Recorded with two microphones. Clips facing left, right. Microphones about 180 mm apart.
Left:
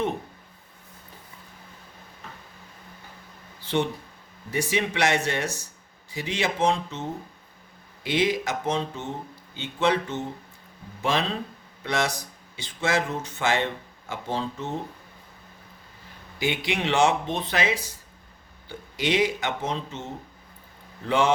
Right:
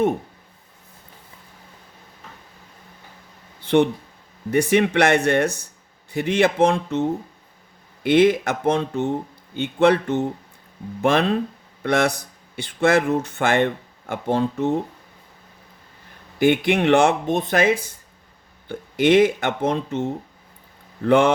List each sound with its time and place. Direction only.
3.6 s a sound: 60° right (ahead or behind)
4.5 s speech: 60° right (ahead or behind)
8.0 s speech: 55° right (ahead or behind)
16.4 s speech: 55° right (ahead or behind)